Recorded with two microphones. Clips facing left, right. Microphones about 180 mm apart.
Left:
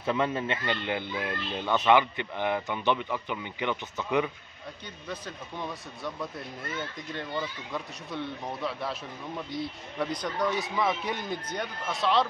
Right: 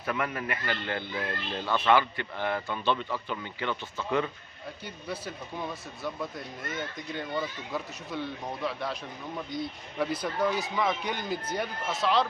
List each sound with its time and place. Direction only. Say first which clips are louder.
0.0 s speech: left 4 dB; 25° left (ahead or behind)
5.0 s speech: right 1 dB; 10° right (ahead or behind)
9.9 s speech: right 1 dB; 5° right (ahead or behind)